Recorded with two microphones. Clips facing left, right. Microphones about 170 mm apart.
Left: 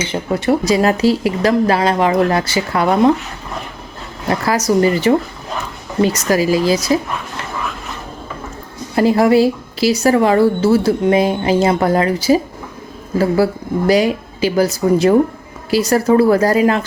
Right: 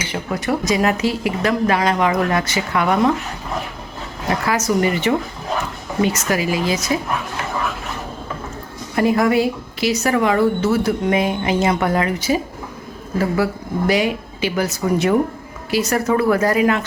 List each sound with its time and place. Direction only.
0.0 s speech: 25° left (ahead or behind)
4.4 s speech: 35° left (ahead or behind)
9.0 s speech: 30° left (ahead or behind)